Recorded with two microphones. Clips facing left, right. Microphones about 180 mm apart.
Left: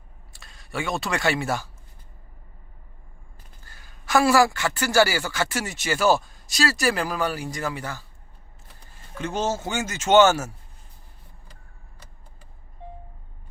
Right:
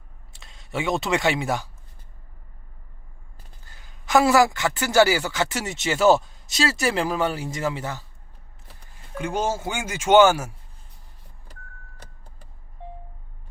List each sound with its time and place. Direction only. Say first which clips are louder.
0.3 s speech: right 2 dB; 20° right (ahead or behind)
3.7 s a man's voice: right 2 dB; 20° right (ahead or behind)
9.1 s speech: right 1 dB; 10° right (ahead or behind)